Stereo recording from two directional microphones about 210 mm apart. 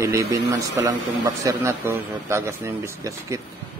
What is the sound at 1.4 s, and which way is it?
Speech, 15° right (ahead or behind).